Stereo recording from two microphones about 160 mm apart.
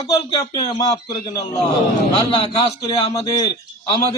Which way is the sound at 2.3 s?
35° left (ahead or behind).